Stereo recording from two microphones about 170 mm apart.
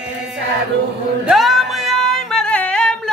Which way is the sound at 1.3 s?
Centre (ahead or behind).